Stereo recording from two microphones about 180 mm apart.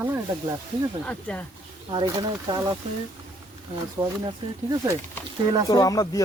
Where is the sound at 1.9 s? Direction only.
25° right (ahead or behind).